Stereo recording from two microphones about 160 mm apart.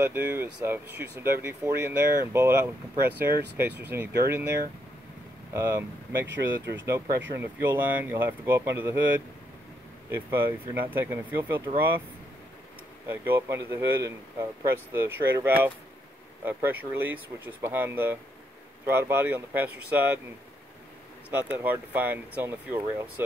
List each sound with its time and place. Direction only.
0.0 s speech: 15° right (ahead or behind)
6.9 s speech: 15° right (ahead or behind)
10.1 s speech: 15° right (ahead or behind)
13.1 s speech: 15° right (ahead or behind)
21.3 s speech: 10° right (ahead or behind)